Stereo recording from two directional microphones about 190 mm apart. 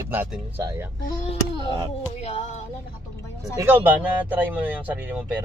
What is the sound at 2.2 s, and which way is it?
Music, 35° left (ahead or behind).